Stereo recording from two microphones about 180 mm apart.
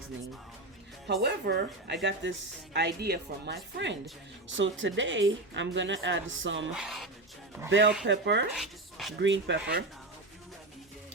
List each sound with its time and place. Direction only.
1.0 s speech: 65° right (ahead or behind)
2.7 s speech: 65° right (ahead or behind)
4.4 s a woman's voice: 90° right
6.7 s speech: centre (ahead or behind)
7.7 s speech: 80° right
8.5 s a sound: centre (ahead or behind)
9.1 s speech: 85° right